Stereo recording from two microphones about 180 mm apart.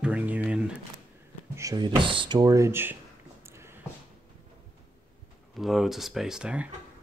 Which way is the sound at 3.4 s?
15° right (ahead or behind).